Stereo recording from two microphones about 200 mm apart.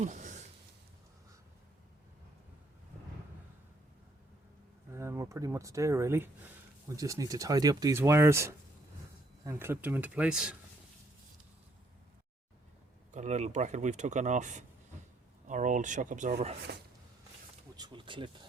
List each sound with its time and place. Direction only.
0.0 s a sound: 35° right (ahead or behind)
4.9 s speech: 15° right (ahead or behind)
13.1 s speech: 35° right (ahead or behind)
17.7 s speech: 20° right (ahead or behind)